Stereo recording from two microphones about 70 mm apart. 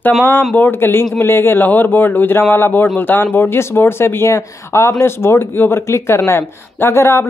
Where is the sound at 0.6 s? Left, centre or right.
Left.